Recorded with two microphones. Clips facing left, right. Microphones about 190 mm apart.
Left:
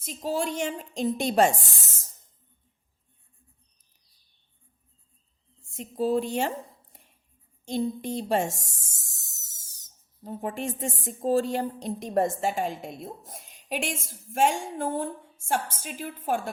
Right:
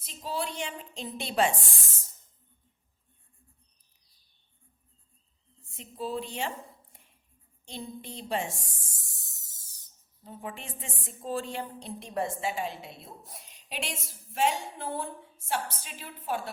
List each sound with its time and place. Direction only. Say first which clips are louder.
0.0 s a woman's voice: left 6 dB; 45° left (ahead or behind)
5.6 s a woman's voice: left 9 dB; 45° left (ahead or behind)
7.6 s a woman's voice: left 12 dB; 45° left (ahead or behind)